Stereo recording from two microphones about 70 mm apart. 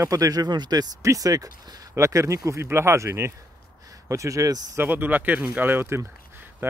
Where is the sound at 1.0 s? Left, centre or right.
Right.